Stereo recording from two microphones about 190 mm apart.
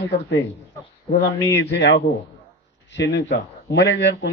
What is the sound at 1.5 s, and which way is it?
A man's voice, 65° left (ahead or behind).